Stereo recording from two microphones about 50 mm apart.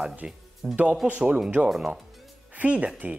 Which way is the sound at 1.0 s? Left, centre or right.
Right.